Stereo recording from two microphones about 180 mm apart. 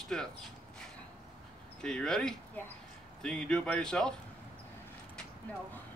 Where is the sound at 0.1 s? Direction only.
5° left (ahead or behind).